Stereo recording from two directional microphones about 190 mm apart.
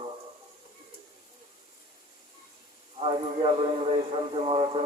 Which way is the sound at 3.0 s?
30° right (ahead or behind).